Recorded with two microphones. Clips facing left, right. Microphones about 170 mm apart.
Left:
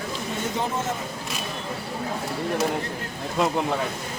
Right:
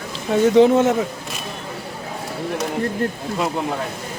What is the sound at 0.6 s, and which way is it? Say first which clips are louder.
Speech: right 16 dB; 75° right (ahead or behind).